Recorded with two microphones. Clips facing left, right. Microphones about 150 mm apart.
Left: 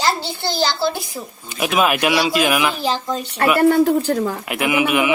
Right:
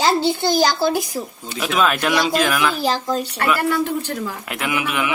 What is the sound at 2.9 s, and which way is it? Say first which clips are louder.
Speech: right 2 dB; 5° right (ahead or behind).